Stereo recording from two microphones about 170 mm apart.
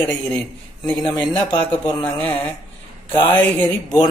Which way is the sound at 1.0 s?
25° left (ahead or behind).